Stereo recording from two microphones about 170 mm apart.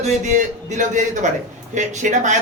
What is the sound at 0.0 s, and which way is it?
A woman's voice, 45° right (ahead or behind).